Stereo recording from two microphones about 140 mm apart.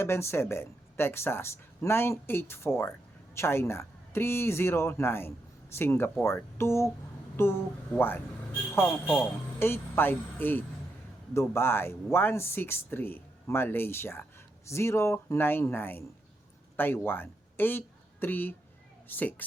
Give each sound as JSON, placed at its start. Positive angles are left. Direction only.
{"t": 0.0, "sound": "speech", "side_deg": 15}